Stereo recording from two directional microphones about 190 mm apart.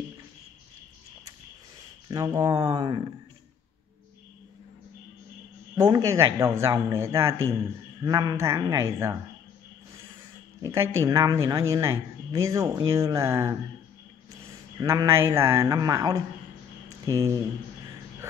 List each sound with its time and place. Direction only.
2.0 s speech: 20° right (ahead or behind)
5.8 s speech: 20° right (ahead or behind)
10.6 s speech: 15° right (ahead or behind)
14.8 s speech: 15° right (ahead or behind)